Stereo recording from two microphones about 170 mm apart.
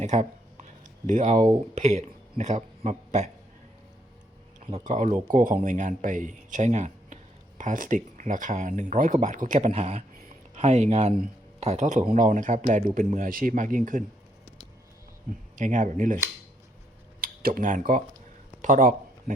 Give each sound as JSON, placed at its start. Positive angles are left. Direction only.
{"t": 0.0, "sound": "a sound", "side_deg": -45}
{"t": 1.0, "sound": "speech", "side_deg": -45}
{"t": 4.9, "sound": "speech", "side_deg": -45}
{"t": 15.5, "sound": "speech", "side_deg": -50}